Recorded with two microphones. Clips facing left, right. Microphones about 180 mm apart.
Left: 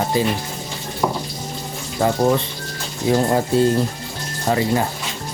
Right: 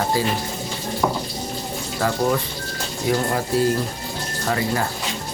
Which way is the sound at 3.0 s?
25° left (ahead or behind).